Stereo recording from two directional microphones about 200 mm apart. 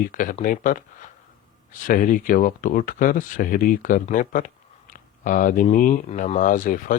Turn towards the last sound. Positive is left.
turn(degrees=40)  # may be behind; listen again after turning